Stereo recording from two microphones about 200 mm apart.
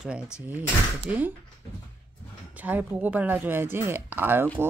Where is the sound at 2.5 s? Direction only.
10° right (ahead or behind).